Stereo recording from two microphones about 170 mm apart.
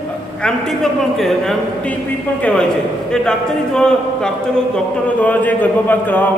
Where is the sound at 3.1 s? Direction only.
5° left (ahead or behind).